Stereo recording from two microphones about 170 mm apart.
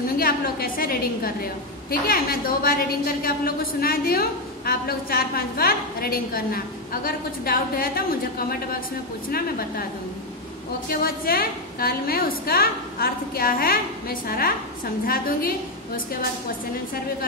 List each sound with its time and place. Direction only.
0.2 s a woman's voice: 60° left (ahead or behind)
9.3 s a woman's voice: 60° left (ahead or behind)
10.9 s a woman's voice: 60° left (ahead or behind)